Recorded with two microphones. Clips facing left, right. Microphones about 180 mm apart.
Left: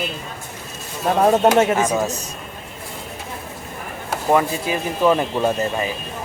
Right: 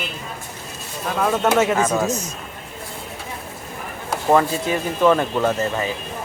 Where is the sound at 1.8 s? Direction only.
15° left (ahead or behind).